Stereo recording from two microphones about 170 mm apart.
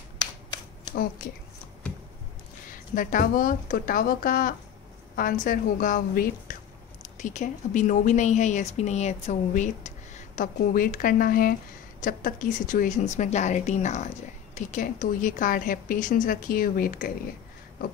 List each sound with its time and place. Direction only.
2.7 s speech: 50° left (ahead or behind)